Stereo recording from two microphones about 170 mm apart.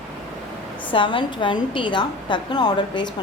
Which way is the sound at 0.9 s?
30° left (ahead or behind).